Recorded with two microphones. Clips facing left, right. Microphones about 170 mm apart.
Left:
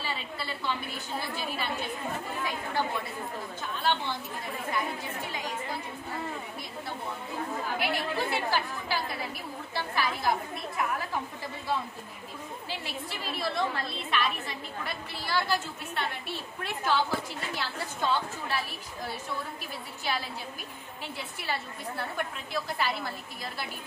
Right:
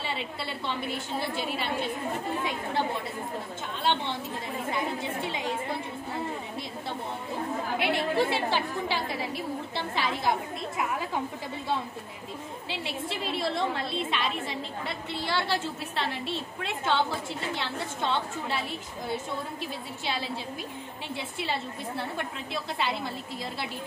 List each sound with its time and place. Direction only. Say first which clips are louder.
0.0 s a woman's voice: right 2 dB; 25° right (ahead or behind)
3.8 s a woman's voice: right 2 dB; 25° right (ahead or behind)
7.8 s a woman's voice: right 6 dB; 25° right (ahead or behind)
12.8 s a woman's voice: right 4 dB; 25° right (ahead or behind)